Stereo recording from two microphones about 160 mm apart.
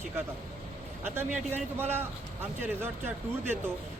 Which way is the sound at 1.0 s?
15° right (ahead or behind).